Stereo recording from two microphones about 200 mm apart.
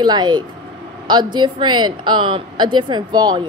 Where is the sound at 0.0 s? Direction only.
20° right (ahead or behind).